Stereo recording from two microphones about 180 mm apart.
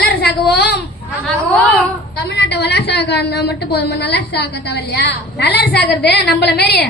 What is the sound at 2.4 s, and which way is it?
A woman's voice, 65° left (ahead or behind).